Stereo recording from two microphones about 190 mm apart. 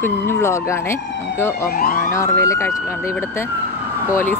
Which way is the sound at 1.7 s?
50° left (ahead or behind).